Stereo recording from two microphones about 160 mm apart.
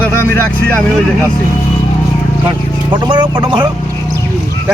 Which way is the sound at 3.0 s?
30° right (ahead or behind).